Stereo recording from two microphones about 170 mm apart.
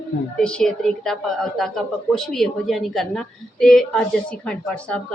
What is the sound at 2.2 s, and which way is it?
A man's voice, centre (ahead or behind).